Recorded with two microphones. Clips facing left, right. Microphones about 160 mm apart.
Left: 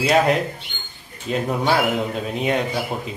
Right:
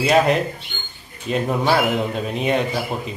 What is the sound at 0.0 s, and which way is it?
Speech, centre (ahead or behind).